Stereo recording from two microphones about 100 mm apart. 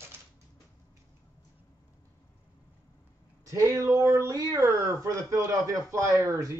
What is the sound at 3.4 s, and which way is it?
A man's voice, 30° right (ahead or behind).